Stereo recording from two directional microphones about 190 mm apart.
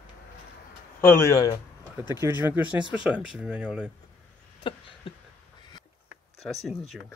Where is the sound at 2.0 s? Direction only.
10° right (ahead or behind).